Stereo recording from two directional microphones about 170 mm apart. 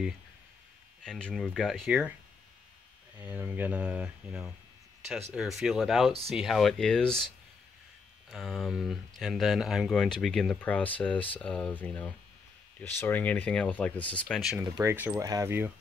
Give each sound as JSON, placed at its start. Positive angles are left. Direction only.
{"t": 1.0, "sound": "speech", "side_deg": 5}
{"t": 3.2, "sound": "speech", "side_deg": -10}
{"t": 8.3, "sound": "speech", "side_deg": 0}
{"t": 14.6, "sound": "speech", "side_deg": -15}